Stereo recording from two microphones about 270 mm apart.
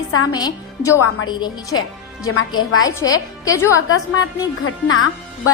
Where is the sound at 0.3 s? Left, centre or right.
Centre.